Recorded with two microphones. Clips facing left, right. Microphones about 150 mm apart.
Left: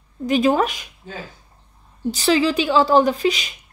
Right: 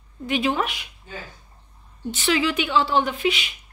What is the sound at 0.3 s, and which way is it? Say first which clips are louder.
Speech: left 6 dB; 40° left (ahead or behind).